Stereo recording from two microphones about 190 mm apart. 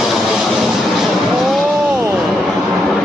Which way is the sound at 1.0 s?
Centre (ahead or behind).